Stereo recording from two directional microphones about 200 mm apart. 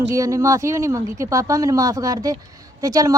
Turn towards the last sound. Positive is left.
turn(degrees=-15)  # may be behind; listen again after turning